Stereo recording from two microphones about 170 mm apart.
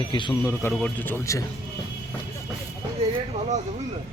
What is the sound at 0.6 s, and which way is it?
Speech, 10° left (ahead or behind).